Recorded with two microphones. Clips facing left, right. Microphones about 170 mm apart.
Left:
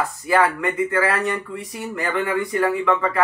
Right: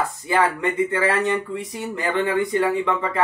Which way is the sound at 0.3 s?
25° right (ahead or behind).